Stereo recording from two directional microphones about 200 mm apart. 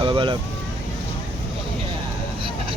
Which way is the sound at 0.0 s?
25° right (ahead or behind).